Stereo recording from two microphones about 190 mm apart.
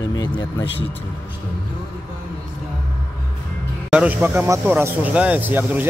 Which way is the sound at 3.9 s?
5° right (ahead or behind).